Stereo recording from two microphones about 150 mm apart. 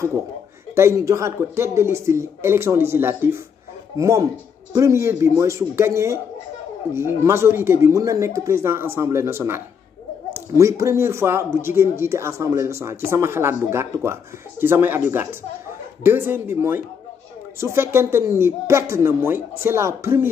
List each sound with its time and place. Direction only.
0.7 s speech: 20° right (ahead or behind)